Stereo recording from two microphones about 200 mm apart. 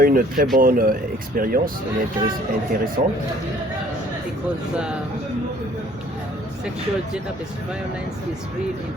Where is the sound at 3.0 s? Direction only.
45° right (ahead or behind).